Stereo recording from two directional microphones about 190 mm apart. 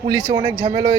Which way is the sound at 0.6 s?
30° right (ahead or behind).